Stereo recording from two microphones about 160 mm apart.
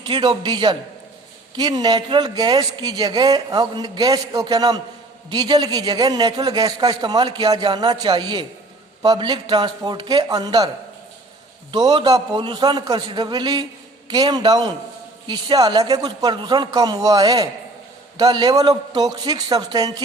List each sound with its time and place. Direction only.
0.1 s speech: 25° right (ahead or behind)
11.7 s speech: 25° right (ahead or behind)